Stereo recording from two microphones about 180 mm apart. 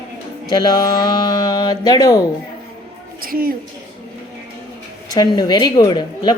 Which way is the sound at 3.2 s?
55° right (ahead or behind).